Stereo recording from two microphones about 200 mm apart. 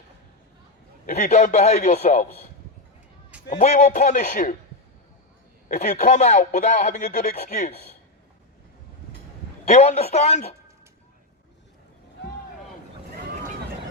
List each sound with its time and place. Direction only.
1.0 s speech: 35° left (ahead or behind)
3.5 s speech: 35° left (ahead or behind)
5.6 s speech: 40° left (ahead or behind)
9.6 s speech: 35° left (ahead or behind)